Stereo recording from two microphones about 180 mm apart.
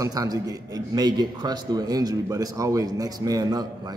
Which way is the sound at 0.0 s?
20° right (ahead or behind).